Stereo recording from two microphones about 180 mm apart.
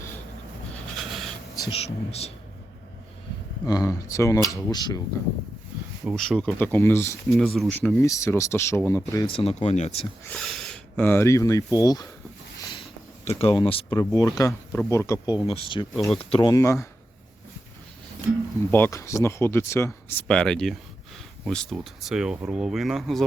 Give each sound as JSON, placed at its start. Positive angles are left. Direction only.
{"t": 0.9, "sound": "writing", "side_deg": 0}
{"t": 1.5, "sound": "speech", "side_deg": 25}
{"t": 3.7, "sound": "speech", "side_deg": 20}
{"t": 6.1, "sound": "speech", "side_deg": 0}
{"t": 7.3, "sound": "speech", "side_deg": 0}
{"t": 9.2, "sound": "speech", "side_deg": 30}
{"t": 10.2, "sound": "speech", "side_deg": 5}
{"t": 12.5, "sound": "a sound", "side_deg": 25}
{"t": 14.0, "sound": "speech", "side_deg": 20}
{"t": 16.5, "sound": "speech", "side_deg": 15}
{"t": 18.7, "sound": "speech", "side_deg": 15}